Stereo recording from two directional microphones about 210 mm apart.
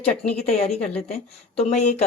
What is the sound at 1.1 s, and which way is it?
Speech, 30° left (ahead or behind).